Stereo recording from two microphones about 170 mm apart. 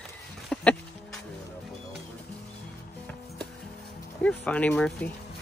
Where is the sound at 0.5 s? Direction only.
5° left (ahead or behind).